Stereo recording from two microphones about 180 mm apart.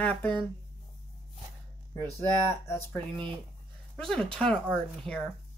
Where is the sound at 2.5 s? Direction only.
15° left (ahead or behind).